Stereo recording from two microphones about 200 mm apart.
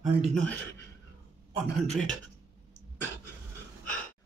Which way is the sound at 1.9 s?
Centre (ahead or behind).